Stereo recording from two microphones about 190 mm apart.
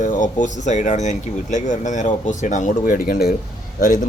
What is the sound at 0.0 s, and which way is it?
Speech, 40° left (ahead or behind).